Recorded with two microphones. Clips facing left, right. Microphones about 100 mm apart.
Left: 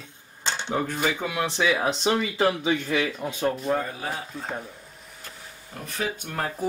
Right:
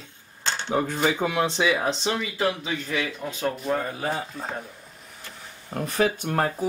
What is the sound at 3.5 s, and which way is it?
Speech, centre (ahead or behind).